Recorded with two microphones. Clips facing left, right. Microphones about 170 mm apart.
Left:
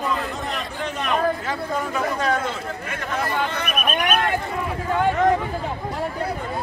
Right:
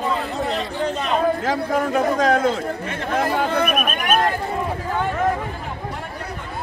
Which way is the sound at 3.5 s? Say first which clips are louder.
Right 4 dB; 40° right (ahead or behind).